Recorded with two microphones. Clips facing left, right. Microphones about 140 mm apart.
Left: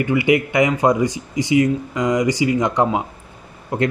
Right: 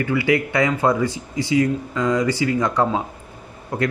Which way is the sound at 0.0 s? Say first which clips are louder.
Left 3 dB; 20° left (ahead or behind).